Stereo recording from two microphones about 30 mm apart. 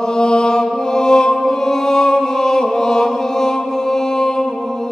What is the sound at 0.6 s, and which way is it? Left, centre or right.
Music, centre.